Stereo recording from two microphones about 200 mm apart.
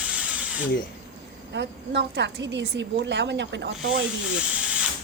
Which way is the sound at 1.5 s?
55° right (ahead or behind).